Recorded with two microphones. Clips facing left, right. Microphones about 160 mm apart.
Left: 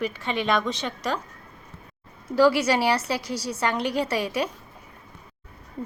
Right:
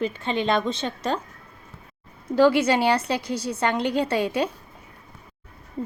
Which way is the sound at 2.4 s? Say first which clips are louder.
Right 1 dB; 25° right (ahead or behind).